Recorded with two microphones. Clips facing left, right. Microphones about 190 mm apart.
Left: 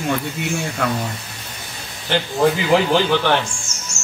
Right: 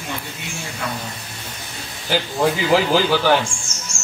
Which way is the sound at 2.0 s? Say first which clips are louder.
Left 2 dB; 5° right (ahead or behind).